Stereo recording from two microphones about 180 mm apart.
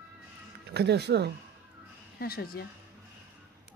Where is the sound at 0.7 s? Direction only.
65° right (ahead or behind).